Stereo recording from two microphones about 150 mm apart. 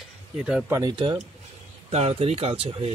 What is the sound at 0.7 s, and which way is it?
Speech, 20° right (ahead or behind).